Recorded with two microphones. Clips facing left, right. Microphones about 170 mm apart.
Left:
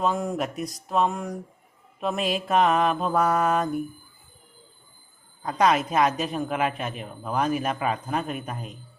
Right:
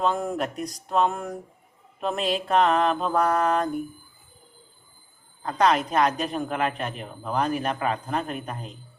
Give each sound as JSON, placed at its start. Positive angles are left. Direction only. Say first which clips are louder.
{"t": 0.0, "sound": "speech", "louder": "even", "side_deg": 0}
{"t": 0.5, "sound": "speech", "louder": "even", "side_deg": -40}
{"t": 0.9, "sound": "a woman's voice", "louder": "right 1 dB", "side_deg": 0}
{"t": 5.4, "sound": "a woman's voice", "louder": "even", "side_deg": 10}